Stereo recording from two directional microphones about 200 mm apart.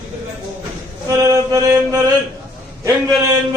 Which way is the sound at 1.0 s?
15° right (ahead or behind).